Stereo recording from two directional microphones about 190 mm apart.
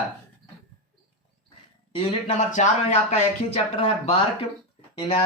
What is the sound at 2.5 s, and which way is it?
Speech, 40° left (ahead or behind).